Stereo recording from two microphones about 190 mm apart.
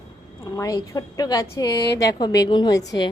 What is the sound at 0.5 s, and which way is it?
A woman's voice, 20° left (ahead or behind).